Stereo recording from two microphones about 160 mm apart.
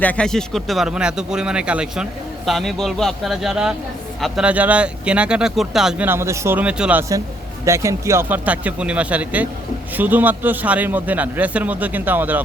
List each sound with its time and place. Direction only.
0.0 s speech: 10° left (ahead or behind)
7.6 s speech: 20° right (ahead or behind)